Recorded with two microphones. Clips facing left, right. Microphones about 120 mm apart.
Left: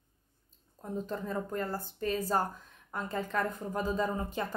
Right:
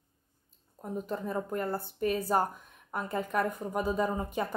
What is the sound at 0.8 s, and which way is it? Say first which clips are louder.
A woman's voice: right 1 dB; 10° right (ahead or behind).